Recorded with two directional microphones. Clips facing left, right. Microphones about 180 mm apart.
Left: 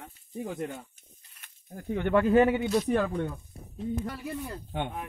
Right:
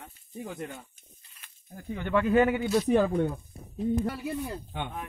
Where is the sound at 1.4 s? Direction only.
55° left (ahead or behind).